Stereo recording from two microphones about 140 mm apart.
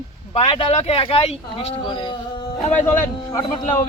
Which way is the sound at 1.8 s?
30° left (ahead or behind).